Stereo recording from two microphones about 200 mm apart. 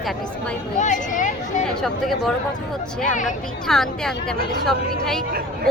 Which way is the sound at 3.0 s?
40° left (ahead or behind).